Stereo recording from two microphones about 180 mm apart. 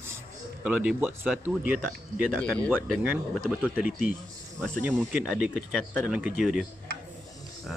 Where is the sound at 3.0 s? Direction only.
10° right (ahead or behind).